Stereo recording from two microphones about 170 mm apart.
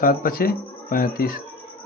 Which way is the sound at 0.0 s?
55° left (ahead or behind).